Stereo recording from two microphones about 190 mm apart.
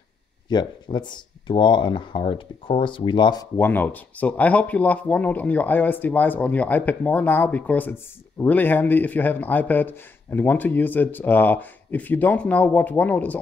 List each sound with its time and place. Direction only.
0.5 s speech: 25° left (ahead or behind)
3.5 s speech: 10° left (ahead or behind)